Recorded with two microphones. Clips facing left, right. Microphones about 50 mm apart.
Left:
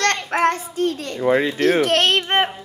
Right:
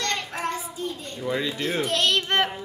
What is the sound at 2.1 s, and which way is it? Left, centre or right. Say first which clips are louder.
Child singing: left 4 dB; left.